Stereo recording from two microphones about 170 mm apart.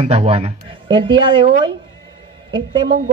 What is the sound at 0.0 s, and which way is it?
Speech, 35° right (ahead or behind).